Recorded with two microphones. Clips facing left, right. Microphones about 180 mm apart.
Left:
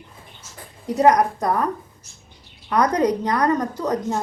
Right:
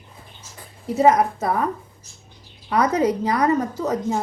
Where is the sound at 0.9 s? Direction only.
Centre (ahead or behind).